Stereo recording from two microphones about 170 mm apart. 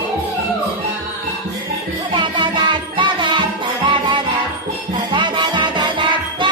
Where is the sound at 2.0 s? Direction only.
30° right (ahead or behind).